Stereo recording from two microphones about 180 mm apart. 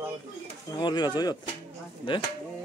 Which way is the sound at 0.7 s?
25° left (ahead or behind).